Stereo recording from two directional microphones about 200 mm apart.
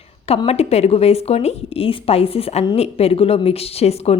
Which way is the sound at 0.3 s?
30° left (ahead or behind).